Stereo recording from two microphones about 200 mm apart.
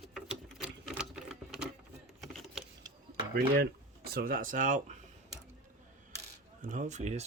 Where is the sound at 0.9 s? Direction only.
Centre (ahead or behind).